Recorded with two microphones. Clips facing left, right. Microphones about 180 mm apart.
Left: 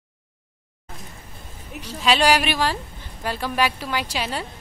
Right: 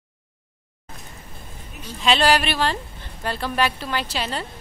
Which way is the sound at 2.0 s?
10° left (ahead or behind).